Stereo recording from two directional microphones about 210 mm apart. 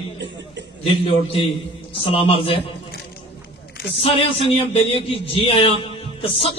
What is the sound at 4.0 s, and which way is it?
Speech, 25° left (ahead or behind).